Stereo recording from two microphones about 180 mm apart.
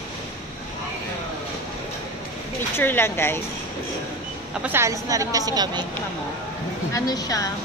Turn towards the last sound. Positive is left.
turn(degrees=20)  # may be behind; listen again after turning